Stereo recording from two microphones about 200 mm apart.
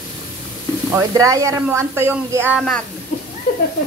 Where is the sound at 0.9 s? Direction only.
15° right (ahead or behind).